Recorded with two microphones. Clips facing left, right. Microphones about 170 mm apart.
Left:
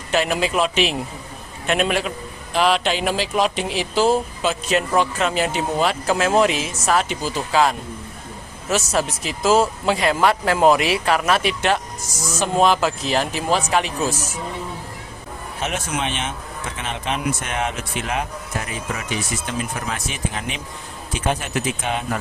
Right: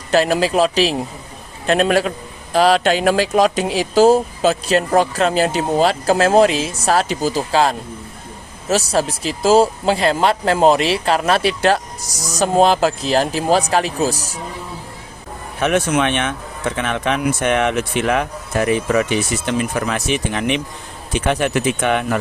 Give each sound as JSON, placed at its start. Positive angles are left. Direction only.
{"t": 0.1, "sound": "speech", "side_deg": -35}
{"t": 15.6, "sound": "a man's voice", "side_deg": -65}